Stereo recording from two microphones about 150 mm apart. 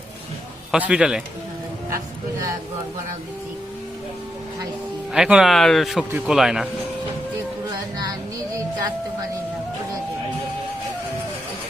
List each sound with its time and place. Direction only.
0.7 s speech: 5° right (ahead or behind)
5.1 s speech: 5° right (ahead or behind)
7.7 s music: 25° right (ahead or behind)